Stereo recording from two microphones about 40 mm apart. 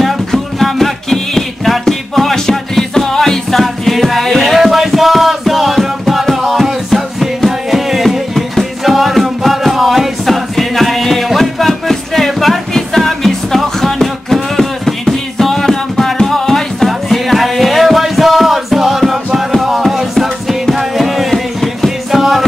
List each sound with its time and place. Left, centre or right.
0.0 s music: centre